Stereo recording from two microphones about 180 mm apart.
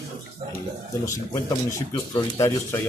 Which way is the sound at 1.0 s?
15° left (ahead or behind).